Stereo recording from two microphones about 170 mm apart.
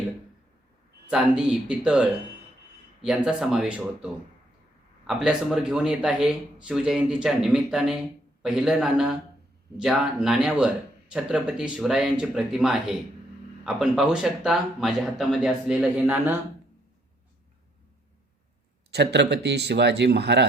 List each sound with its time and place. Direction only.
1.1 s speech: 5° right (ahead or behind)
18.9 s a man's voice: 80° right